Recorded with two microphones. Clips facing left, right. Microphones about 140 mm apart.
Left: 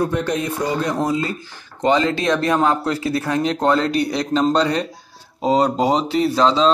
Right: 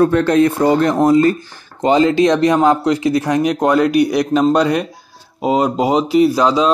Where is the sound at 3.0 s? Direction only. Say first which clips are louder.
Right 6 dB; 30° left (ahead or behind).